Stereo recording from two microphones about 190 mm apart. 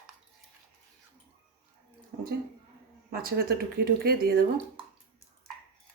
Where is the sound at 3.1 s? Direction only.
55° right (ahead or behind).